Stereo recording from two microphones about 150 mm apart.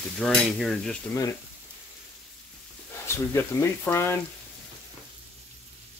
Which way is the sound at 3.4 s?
15° left (ahead or behind).